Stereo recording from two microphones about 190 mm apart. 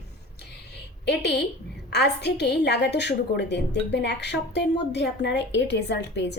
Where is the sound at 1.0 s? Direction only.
60° left (ahead or behind).